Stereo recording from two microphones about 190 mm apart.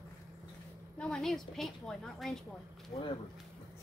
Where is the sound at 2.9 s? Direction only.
35° left (ahead or behind).